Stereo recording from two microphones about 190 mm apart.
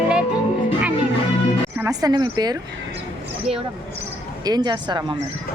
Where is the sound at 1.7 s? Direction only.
15° right (ahead or behind).